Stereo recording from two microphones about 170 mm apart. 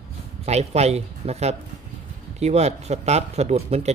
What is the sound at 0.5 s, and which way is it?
Speech, 40° right (ahead or behind).